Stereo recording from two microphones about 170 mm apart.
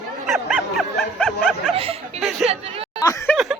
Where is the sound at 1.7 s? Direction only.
35° right (ahead or behind).